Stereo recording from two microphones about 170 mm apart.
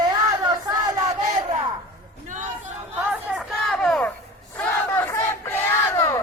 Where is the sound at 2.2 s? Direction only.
50° right (ahead or behind).